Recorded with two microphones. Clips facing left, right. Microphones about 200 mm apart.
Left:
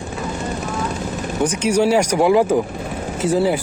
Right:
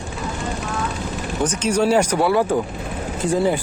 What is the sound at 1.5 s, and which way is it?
Speech, 10° left (ahead or behind).